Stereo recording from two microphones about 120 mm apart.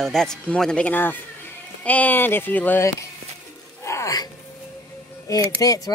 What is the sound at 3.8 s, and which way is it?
Music, 25° left (ahead or behind).